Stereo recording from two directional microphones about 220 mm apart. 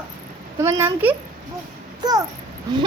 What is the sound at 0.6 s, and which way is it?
Speech, 10° right (ahead or behind).